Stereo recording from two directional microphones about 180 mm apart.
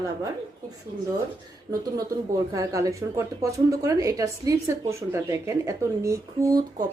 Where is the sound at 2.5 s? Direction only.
20° right (ahead or behind).